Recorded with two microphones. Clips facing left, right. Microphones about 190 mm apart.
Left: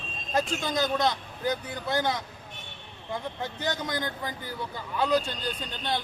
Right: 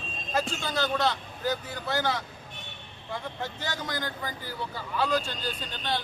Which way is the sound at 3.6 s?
20° left (ahead or behind).